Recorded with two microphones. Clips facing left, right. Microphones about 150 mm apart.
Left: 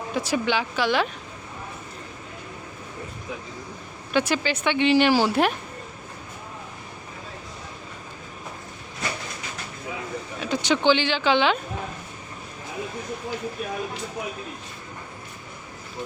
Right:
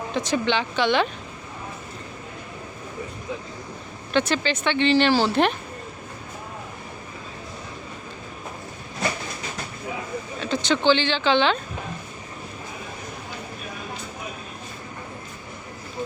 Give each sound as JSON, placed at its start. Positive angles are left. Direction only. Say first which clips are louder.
{"t": 0.1, "sound": "speech", "louder": "right 1 dB", "side_deg": 5}
{"t": 4.1, "sound": "speech", "louder": "right 1 dB", "side_deg": 10}
{"t": 10.4, "sound": "speech", "louder": "even", "side_deg": 10}